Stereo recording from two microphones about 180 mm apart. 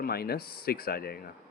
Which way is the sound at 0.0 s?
60° left (ahead or behind).